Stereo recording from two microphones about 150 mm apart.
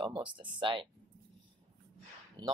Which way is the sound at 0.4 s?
35° right (ahead or behind).